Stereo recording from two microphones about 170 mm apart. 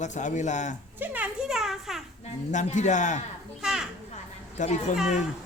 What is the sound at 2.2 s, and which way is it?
A man's voice, 45° left (ahead or behind).